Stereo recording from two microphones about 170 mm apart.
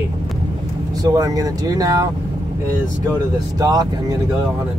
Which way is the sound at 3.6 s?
20° right (ahead or behind).